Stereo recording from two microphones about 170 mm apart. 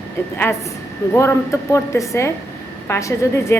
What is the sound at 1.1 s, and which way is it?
A woman's voice, 15° left (ahead or behind).